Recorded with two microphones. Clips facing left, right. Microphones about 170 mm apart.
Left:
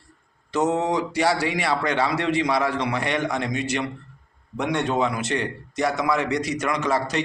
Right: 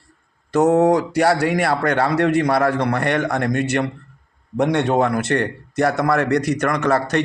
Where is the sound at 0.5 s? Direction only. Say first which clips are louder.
Right 8 dB; 55° right (ahead or behind).